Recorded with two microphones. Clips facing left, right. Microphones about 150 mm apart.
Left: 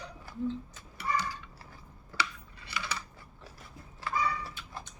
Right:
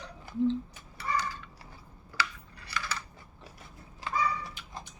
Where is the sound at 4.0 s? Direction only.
15° right (ahead or behind).